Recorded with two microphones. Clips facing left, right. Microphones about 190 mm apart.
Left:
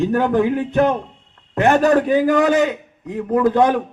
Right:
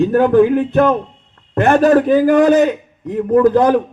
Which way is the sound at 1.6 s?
40° right (ahead or behind).